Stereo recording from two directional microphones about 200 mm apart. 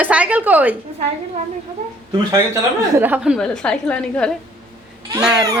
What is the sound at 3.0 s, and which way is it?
A woman's voice, 10° right (ahead or behind).